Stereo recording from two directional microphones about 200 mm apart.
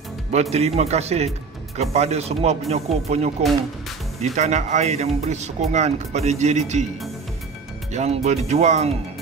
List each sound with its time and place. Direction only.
0.3 s speech: 30° right (ahead or behind)
7.9 s speech: 35° right (ahead or behind)